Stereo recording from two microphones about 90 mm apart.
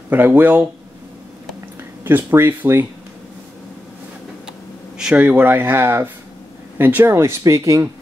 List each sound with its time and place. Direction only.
0.1 s speech: 20° right (ahead or behind)
2.0 s speech: 25° right (ahead or behind)
4.9 s a sound: 10° right (ahead or behind)
5.2 s speech: 20° right (ahead or behind); by 7.9 s 35° right (ahead or behind)